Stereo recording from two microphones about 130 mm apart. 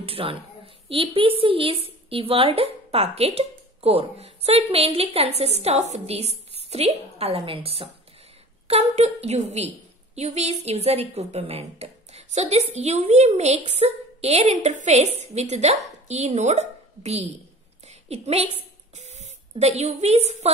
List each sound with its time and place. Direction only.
0.0 s a woman's voice: 45° right (ahead or behind)
17.8 s a sound: 55° right (ahead or behind)
18.9 s speech: 60° right (ahead or behind)